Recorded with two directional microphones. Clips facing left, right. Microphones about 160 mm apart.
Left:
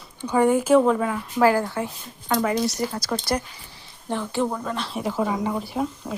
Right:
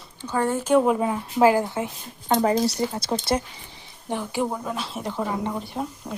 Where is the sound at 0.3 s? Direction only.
15° left (ahead or behind).